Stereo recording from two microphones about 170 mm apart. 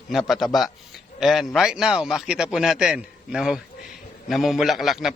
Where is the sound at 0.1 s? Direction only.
Centre (ahead or behind).